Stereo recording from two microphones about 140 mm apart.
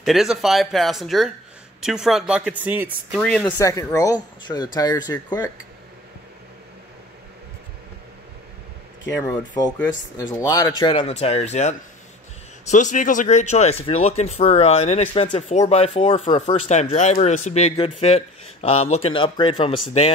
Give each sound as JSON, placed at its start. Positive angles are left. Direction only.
{"t": 0.0, "sound": "speech", "side_deg": 0}
{"t": 3.2, "sound": "speech", "side_deg": 10}
{"t": 3.5, "sound": "speech", "side_deg": 25}
{"t": 9.1, "sound": "speech", "side_deg": 20}
{"t": 10.8, "sound": "speech", "side_deg": 40}